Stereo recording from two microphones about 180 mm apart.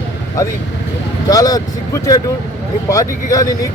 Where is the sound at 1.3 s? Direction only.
20° left (ahead or behind).